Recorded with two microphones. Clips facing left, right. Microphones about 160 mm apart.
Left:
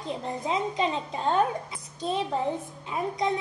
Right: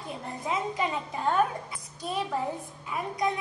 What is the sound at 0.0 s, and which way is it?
A woman's voice, 20° left (ahead or behind).